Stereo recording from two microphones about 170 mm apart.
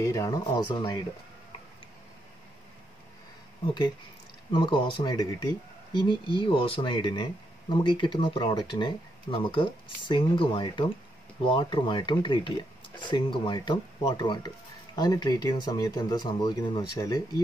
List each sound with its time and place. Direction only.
0.0 s speech: 20° left (ahead or behind)
3.6 s speech: 25° left (ahead or behind)